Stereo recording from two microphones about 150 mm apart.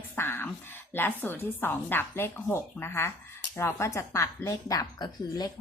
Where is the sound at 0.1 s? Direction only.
15° left (ahead or behind).